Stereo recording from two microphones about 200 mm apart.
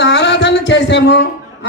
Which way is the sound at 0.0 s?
60° left (ahead or behind).